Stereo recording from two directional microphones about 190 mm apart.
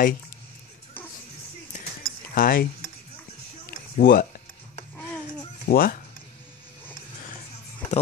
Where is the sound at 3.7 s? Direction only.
50° left (ahead or behind).